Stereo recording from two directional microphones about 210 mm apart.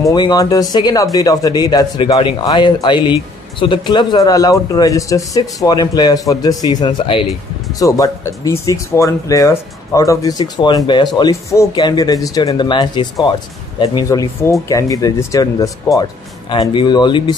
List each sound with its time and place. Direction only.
0.1 s speech: 20° left (ahead or behind)